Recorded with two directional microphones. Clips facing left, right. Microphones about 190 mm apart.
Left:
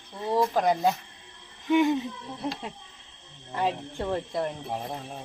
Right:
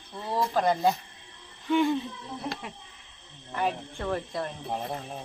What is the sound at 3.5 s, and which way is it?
Speech, 25° left (ahead or behind).